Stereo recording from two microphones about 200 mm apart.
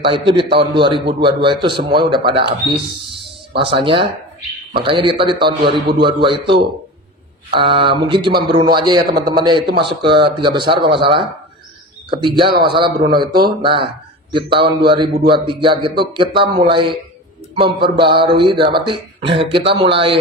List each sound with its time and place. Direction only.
0.0 s speech: 25° right (ahead or behind)